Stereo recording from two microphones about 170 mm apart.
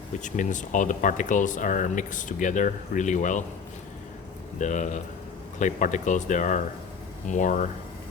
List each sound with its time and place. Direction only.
0.2 s speech: 45° left (ahead or behind)
4.6 s speech: 45° left (ahead or behind)